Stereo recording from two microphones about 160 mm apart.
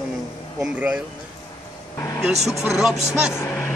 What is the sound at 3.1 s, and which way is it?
Speech, 5° right (ahead or behind).